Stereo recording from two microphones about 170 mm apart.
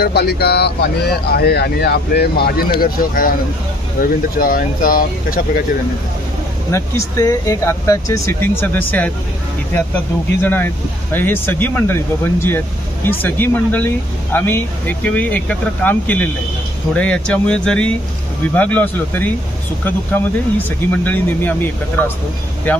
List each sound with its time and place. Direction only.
0.0 s speech: 70° left (ahead or behind)
6.7 s speech: 20° left (ahead or behind)
22.7 s speech: 10° left (ahead or behind)